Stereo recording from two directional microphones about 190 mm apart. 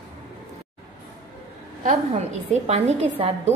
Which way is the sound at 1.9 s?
35° right (ahead or behind).